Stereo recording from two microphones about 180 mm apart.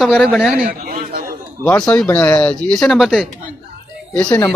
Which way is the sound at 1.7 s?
10° left (ahead or behind).